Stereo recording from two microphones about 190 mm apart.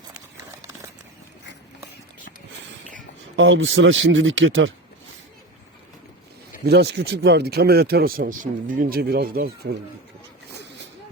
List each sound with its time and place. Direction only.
3.3 s a man's voice: 85° right
6.7 s speech: 60° right (ahead or behind)
10.5 s a sound: 65° right (ahead or behind)